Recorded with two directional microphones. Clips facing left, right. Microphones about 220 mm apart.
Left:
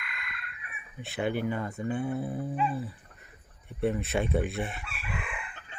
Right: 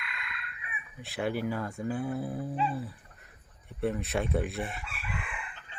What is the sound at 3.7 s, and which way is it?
Speech, centre (ahead or behind).